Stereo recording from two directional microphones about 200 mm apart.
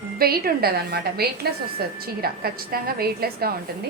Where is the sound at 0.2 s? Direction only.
50° right (ahead or behind).